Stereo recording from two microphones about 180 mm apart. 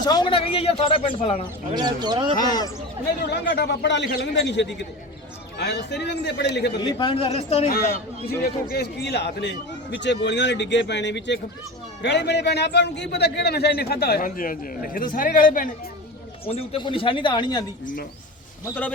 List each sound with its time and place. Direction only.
0.0 s a man's voice: 20° left (ahead or behind)
1.7 s speech: 25° right (ahead or behind)
2.4 s a man's voice: 20° left (ahead or behind)
3.2 s a man's voice: 65° left (ahead or behind)
6.7 s a man's voice: 25° left (ahead or behind)
8.7 s a man's voice: 65° left (ahead or behind); by 15.7 s 50° left (ahead or behind)
16.5 s a man's voice: 30° left (ahead or behind)
18.6 s a man's voice: 10° left (ahead or behind)